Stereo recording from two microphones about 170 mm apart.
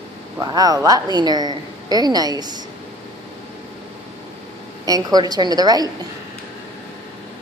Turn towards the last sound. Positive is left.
turn(degrees=-25)  # may be behind; listen again after turning